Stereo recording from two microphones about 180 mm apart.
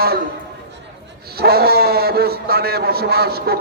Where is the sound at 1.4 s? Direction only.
60° right (ahead or behind).